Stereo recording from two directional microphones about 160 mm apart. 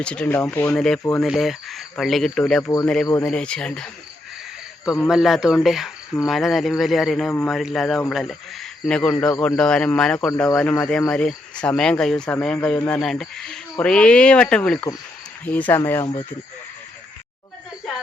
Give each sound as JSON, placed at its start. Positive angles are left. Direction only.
{"t": 0.0, "sound": "speech", "side_deg": 5}
{"t": 1.2, "sound": "speech", "side_deg": 0}
{"t": 5.0, "sound": "speech", "side_deg": 0}
{"t": 9.3, "sound": "speech", "side_deg": 15}
{"t": 9.6, "sound": "speech", "side_deg": 5}